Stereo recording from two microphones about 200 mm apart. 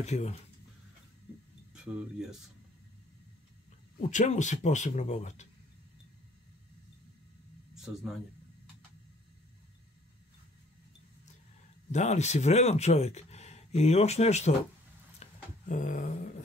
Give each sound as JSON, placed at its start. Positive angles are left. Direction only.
{"t": 0.0, "sound": "speech", "side_deg": 35}
{"t": 1.7, "sound": "speech", "side_deg": -5}
{"t": 4.0, "sound": "speech", "side_deg": 35}
{"t": 7.7, "sound": "speech", "side_deg": 0}
{"t": 11.9, "sound": "speech", "side_deg": 35}
{"t": 15.2, "sound": "a sound", "side_deg": 30}
{"t": 15.7, "sound": "speech", "side_deg": 40}